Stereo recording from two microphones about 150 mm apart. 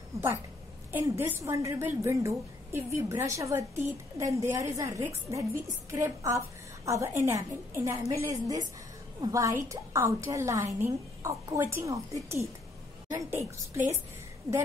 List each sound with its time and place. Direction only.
0.9 s a woman's voice: 15° right (ahead or behind)